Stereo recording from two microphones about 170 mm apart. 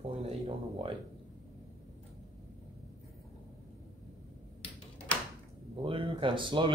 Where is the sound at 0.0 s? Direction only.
40° right (ahead or behind).